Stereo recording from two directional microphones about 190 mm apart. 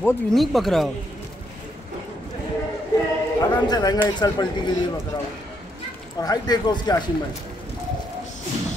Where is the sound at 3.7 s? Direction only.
20° left (ahead or behind).